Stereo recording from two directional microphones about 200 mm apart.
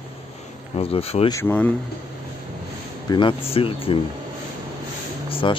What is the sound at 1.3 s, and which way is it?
Speech, 10° left (ahead or behind).